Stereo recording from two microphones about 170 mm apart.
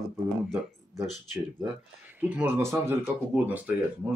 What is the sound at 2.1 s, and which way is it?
Speech, 10° right (ahead or behind).